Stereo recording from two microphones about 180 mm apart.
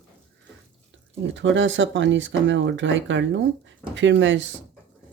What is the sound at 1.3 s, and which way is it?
Speech, 90° right.